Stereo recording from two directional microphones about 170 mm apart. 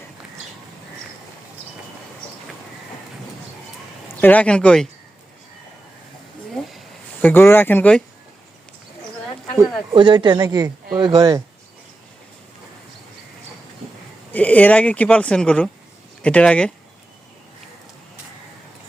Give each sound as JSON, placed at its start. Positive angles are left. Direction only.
{"t": 4.1, "sound": "speech", "side_deg": 10}
{"t": 6.7, "sound": "a sound", "side_deg": 0}
{"t": 7.3, "sound": "speech", "side_deg": 10}
{"t": 9.9, "sound": "speech", "side_deg": -30}
{"t": 14.3, "sound": "speech", "side_deg": 10}